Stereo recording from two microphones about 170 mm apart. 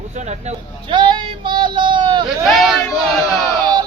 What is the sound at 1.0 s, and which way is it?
Speech, 30° right (ahead or behind).